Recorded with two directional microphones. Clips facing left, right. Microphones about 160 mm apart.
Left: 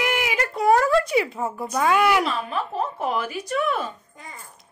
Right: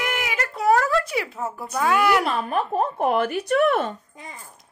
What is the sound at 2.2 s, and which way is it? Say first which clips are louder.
Speech: right 3 dB; 50° right (ahead or behind).